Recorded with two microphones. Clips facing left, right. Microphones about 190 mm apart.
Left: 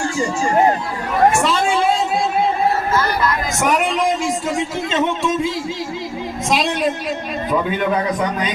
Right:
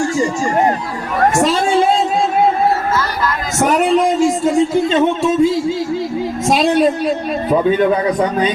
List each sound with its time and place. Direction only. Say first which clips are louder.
3.6 s speech: right 4 dB; 35° right (ahead or behind)
4.9 s music: right 5 dB; 35° right (ahead or behind)
6.5 s a sound: right 6 dB; 40° right (ahead or behind)